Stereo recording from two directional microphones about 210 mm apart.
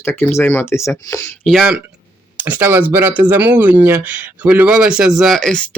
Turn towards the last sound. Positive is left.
turn(degrees=5)  # may be behind; listen again after turning